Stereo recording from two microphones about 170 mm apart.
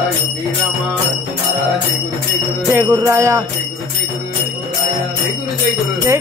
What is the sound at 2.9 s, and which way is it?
Speech, 15° right (ahead or behind).